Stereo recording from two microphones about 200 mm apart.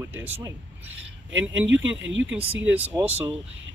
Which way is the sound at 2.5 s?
5° right (ahead or behind).